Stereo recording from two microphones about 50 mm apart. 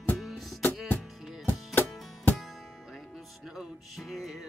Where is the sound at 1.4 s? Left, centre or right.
Left.